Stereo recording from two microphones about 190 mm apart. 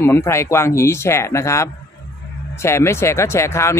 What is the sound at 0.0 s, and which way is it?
Speech, 15° left (ahead or behind).